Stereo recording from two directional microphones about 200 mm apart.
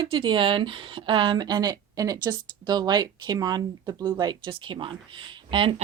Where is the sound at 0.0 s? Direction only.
25° right (ahead or behind).